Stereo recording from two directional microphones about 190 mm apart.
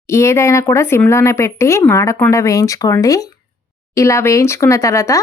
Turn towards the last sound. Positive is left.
turn(degrees=15)  # may be behind; listen again after turning